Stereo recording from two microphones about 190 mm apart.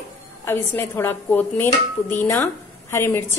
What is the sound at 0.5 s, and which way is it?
A woman's voice, 10° left (ahead or behind).